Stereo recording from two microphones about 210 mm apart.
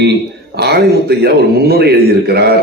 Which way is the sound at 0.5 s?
50° right (ahead or behind).